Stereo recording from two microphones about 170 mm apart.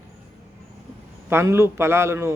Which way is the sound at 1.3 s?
15° right (ahead or behind).